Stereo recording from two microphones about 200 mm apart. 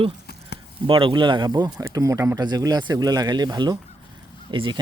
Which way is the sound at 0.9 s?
25° right (ahead or behind).